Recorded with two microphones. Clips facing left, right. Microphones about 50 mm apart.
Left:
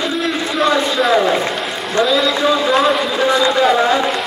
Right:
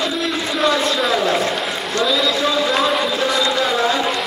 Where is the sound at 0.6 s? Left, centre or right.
Centre.